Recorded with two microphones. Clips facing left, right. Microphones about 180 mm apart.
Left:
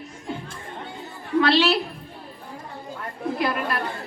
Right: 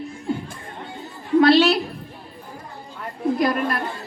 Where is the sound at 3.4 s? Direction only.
40° right (ahead or behind).